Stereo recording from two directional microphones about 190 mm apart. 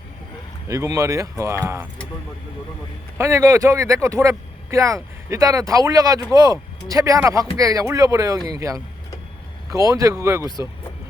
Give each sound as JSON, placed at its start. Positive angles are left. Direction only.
{"t": 0.7, "sound": "speech", "side_deg": -15}
{"t": 3.2, "sound": "speech", "side_deg": -15}